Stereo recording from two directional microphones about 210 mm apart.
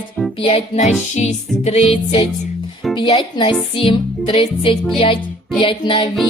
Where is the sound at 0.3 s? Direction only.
25° left (ahead or behind).